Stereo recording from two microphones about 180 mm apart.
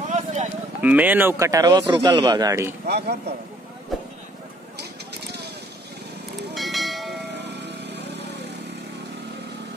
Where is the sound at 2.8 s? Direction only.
65° right (ahead or behind).